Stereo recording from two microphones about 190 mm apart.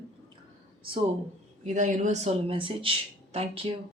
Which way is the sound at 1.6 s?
40° right (ahead or behind).